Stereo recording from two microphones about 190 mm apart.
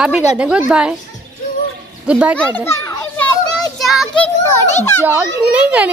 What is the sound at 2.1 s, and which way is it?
Speech, 5° right (ahead or behind).